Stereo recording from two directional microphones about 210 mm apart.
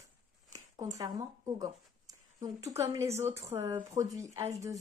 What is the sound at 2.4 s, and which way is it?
Speech, 15° right (ahead or behind).